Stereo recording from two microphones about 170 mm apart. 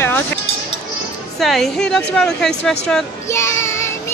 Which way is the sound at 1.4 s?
Centre (ahead or behind).